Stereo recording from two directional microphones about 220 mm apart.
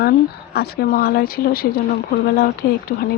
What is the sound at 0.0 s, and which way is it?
Speech, 45° left (ahead or behind).